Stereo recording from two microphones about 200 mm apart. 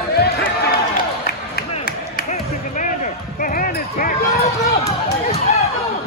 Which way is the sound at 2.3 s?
40° left (ahead or behind).